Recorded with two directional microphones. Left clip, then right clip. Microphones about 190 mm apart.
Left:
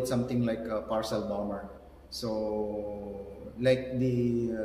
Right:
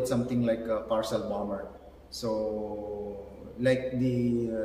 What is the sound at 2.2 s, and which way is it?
Speech, 20° left (ahead or behind).